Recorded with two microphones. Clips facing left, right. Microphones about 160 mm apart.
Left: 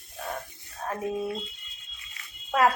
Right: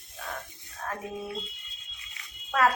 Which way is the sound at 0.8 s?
20° left (ahead or behind).